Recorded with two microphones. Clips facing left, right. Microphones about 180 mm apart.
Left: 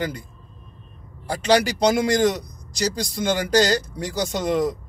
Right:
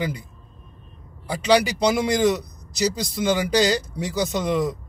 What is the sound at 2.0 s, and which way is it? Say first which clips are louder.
A man's voice: even; 5° right (ahead or behind).